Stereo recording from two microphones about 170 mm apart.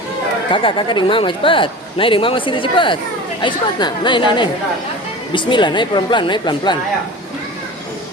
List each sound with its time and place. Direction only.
0.5 s speech: 30° left (ahead or behind)